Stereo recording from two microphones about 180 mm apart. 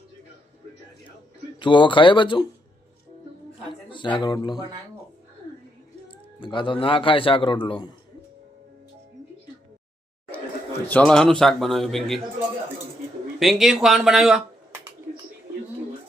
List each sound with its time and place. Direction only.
1.5 s speech: 25° left (ahead or behind)
3.8 s speech: 25° left (ahead or behind)
6.1 s speech: 25° left (ahead or behind)
10.8 s a man's voice: 5° left (ahead or behind)
13.4 s a man's voice: centre (ahead or behind)